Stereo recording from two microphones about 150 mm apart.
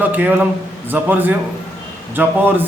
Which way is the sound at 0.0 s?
10° right (ahead or behind).